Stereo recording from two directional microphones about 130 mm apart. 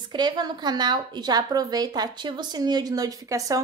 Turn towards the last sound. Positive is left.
turn(degrees=-30)  # may be behind; listen again after turning